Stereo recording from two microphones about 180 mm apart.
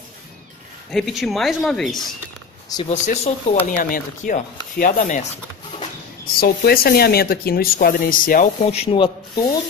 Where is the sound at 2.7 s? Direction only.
20° left (ahead or behind).